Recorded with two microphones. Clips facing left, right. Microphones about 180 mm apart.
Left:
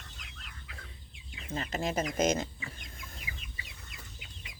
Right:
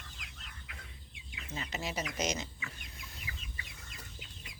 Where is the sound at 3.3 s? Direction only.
15° left (ahead or behind).